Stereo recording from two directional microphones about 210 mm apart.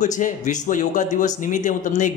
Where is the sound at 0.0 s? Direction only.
35° left (ahead or behind).